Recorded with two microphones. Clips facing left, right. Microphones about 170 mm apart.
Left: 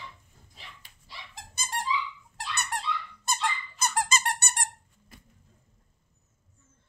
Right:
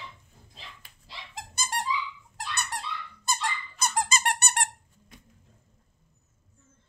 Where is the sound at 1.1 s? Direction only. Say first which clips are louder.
Right 4 dB; 90° right.